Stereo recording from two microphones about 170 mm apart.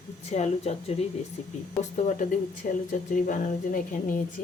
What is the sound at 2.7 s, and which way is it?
A woman's voice, 50° left (ahead or behind).